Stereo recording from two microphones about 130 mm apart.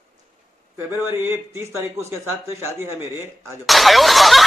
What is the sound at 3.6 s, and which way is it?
Speech, centre (ahead or behind).